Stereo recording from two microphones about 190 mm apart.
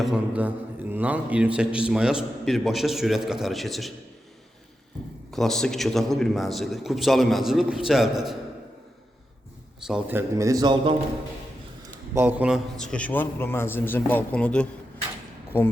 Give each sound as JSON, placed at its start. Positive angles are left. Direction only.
{"t": 0.0, "sound": "a man's voice", "side_deg": -5}
{"t": 5.3, "sound": "a man's voice", "side_deg": 0}
{"t": 9.8, "sound": "a man's voice", "side_deg": -5}
{"t": 12.1, "sound": "a man's voice", "side_deg": -10}
{"t": 12.8, "sound": "a man's voice", "side_deg": 5}